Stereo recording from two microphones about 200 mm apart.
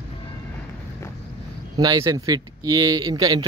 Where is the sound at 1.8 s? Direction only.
20° right (ahead or behind).